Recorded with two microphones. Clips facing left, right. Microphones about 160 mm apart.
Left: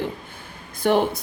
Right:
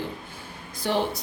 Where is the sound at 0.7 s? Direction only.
55° left (ahead or behind).